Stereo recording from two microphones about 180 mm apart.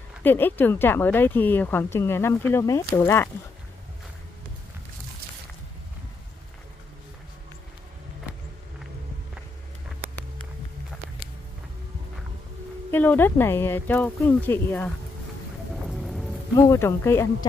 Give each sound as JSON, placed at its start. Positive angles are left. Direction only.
{"t": 0.2, "sound": "speech", "side_deg": 10}
{"t": 12.9, "sound": "speech", "side_deg": 10}
{"t": 15.7, "sound": "music", "side_deg": 0}
{"t": 16.5, "sound": "speech", "side_deg": 15}